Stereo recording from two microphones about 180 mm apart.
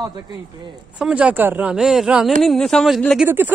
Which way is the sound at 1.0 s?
5° right (ahead or behind).